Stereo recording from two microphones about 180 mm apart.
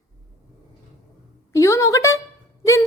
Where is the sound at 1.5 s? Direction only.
15° left (ahead or behind).